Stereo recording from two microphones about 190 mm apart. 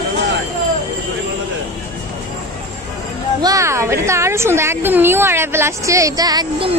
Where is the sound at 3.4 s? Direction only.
15° right (ahead or behind).